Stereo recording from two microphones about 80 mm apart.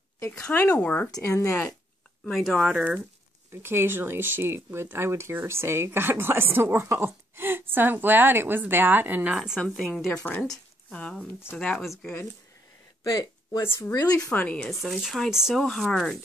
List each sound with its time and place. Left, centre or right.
0.5 s speech: left
1.2 s speech: left
2.3 s speech: centre
2.7 s speech: centre
3.6 s speech: right
9.3 s speech: centre
9.6 s speech: centre
10.4 s a sound: centre
11.0 s speech: centre
13.0 s speech: left
13.6 s speech: left
13.9 s speech: left
14.3 s speech: centre
14.7 s speech: centre